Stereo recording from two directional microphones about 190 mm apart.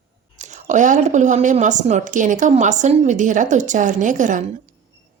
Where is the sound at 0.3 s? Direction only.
40° right (ahead or behind).